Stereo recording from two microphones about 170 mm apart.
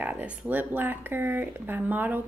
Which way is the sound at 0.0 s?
10° right (ahead or behind).